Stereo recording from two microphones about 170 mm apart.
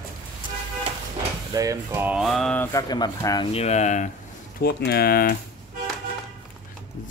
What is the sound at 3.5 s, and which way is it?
Speech, 40° left (ahead or behind).